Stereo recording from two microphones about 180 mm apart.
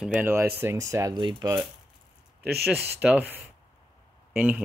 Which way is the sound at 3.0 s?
10° right (ahead or behind).